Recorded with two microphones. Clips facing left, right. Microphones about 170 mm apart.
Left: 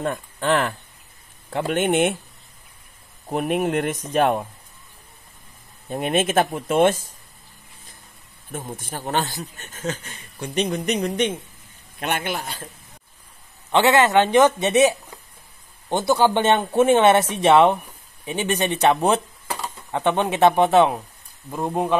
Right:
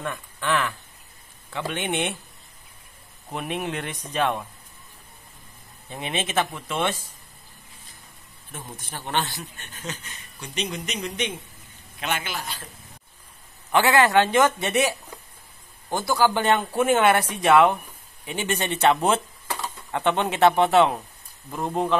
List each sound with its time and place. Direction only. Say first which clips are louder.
0.0 s speech: left 6 dB; 45° left (ahead or behind)
3.3 s speech: left 7 dB; 45° left (ahead or behind)
5.9 s speech: left 8 dB; 50° left (ahead or behind)
8.5 s a man's voice: left 7 dB; 50° left (ahead or behind)
13.7 s speech: left 2 dB; 25° left (ahead or behind)